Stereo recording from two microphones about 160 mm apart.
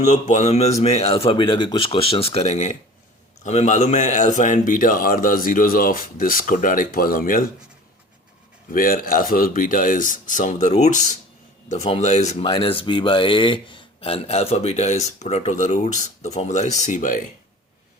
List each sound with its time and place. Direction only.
0.0 s a man's voice: 50° left (ahead or behind)
8.7 s speech: 60° left (ahead or behind)